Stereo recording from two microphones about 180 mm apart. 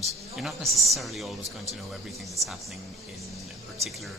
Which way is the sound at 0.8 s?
Centre (ahead or behind).